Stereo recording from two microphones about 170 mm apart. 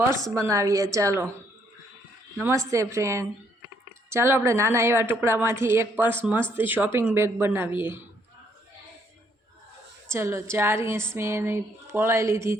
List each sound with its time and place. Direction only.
0.3 s a woman's voice: 15° right (ahead or behind)
2.4 s a woman's voice: 20° right (ahead or behind)
10.1 s a woman's voice: 15° right (ahead or behind)